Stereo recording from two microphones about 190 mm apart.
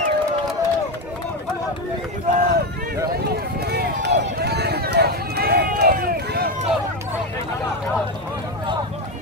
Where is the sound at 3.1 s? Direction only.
55° right (ahead or behind).